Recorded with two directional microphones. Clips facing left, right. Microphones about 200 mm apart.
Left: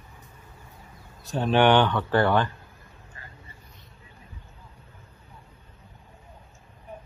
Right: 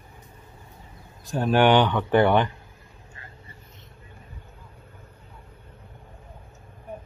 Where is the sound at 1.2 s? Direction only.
10° right (ahead or behind).